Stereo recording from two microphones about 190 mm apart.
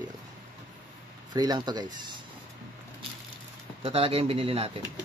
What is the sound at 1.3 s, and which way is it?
Speech, 20° right (ahead or behind).